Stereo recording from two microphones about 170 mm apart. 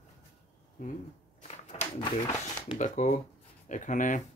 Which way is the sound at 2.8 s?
45° left (ahead or behind).